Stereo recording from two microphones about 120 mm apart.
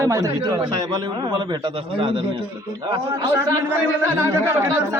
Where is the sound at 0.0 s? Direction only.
25° right (ahead or behind); by 2.2 s 45° right (ahead or behind).